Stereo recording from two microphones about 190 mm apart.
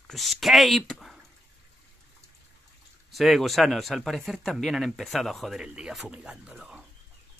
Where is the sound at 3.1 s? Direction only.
Centre (ahead or behind).